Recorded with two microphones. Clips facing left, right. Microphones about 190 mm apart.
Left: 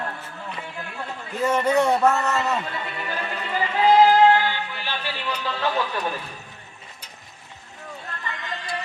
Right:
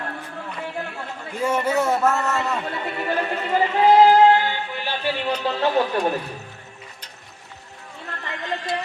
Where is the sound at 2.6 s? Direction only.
50° right (ahead or behind).